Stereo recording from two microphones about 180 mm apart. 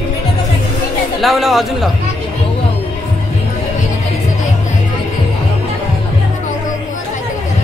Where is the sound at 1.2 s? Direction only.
Centre (ahead or behind).